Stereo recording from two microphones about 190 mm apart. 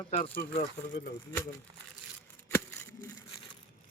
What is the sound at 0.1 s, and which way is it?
Speech, 50° left (ahead or behind).